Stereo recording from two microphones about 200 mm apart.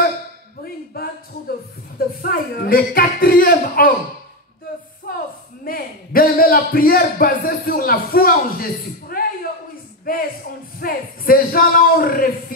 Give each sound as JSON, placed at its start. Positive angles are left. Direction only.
{"t": 1.0, "sound": "a sound", "side_deg": 50}
{"t": 2.0, "sound": "speech", "side_deg": 45}
{"t": 5.7, "sound": "a man's voice", "side_deg": 45}
{"t": 10.0, "sound": "music", "side_deg": 45}
{"t": 10.8, "sound": "speech", "side_deg": 45}